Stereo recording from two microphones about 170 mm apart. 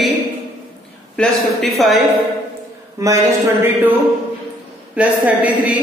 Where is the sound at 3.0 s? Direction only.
20° right (ahead or behind).